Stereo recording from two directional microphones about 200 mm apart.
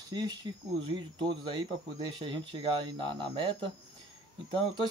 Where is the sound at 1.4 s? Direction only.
25° right (ahead or behind).